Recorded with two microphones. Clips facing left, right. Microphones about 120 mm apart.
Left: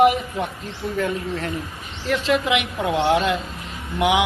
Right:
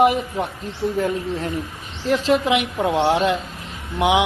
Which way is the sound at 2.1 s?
35° right (ahead or behind).